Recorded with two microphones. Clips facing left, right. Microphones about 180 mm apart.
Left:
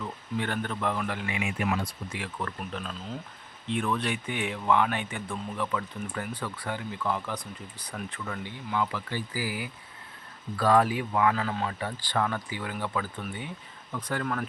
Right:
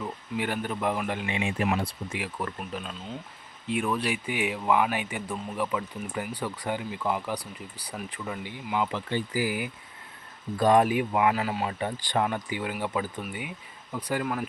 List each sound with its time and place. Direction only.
0.0 s speech: 10° right (ahead or behind)
2.6 s speech: centre (ahead or behind)